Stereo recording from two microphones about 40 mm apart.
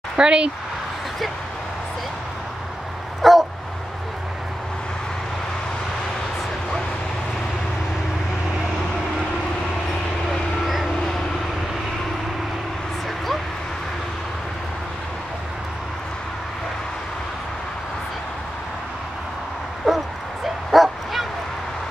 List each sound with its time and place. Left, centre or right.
0.2 s speech: right
3.2 s dog: centre
19.9 s dog: centre
20.7 s bow-wow: centre